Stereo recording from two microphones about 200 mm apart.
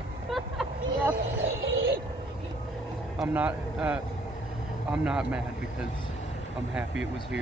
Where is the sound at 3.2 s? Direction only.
5° right (ahead or behind).